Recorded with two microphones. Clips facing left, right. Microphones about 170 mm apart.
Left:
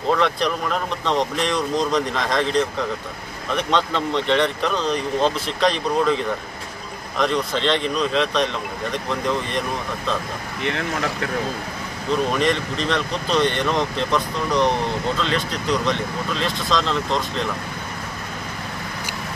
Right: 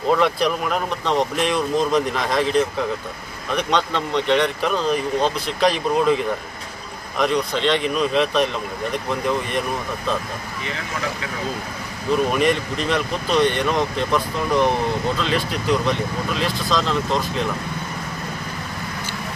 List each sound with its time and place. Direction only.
0.1 s speech: 5° right (ahead or behind)
10.6 s speech: 65° left (ahead or behind)
12.3 s speech: 10° right (ahead or behind)